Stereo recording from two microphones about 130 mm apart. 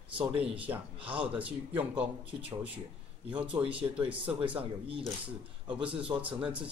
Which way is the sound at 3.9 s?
45° right (ahead or behind).